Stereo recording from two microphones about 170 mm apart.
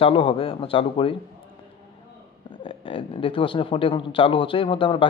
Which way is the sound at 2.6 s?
30° left (ahead or behind).